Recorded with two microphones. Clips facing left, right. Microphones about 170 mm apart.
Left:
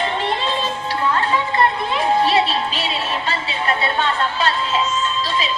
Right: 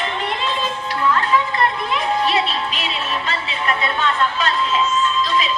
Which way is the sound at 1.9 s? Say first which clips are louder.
Left 4 dB; 30° left (ahead or behind).